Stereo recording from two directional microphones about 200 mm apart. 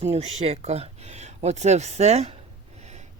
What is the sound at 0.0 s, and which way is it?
Speech, 30° right (ahead or behind).